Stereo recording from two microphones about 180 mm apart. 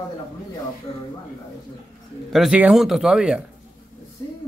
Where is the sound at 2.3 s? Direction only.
5° right (ahead or behind).